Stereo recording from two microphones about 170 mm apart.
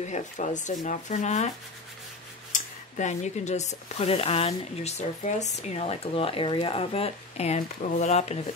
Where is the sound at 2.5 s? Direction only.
45° left (ahead or behind).